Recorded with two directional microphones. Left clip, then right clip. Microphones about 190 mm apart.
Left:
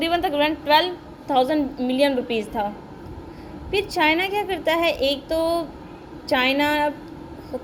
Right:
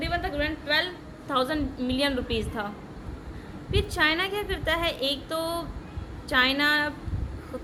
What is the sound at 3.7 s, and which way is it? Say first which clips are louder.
A woman's voice: left 5 dB; 5° left (ahead or behind).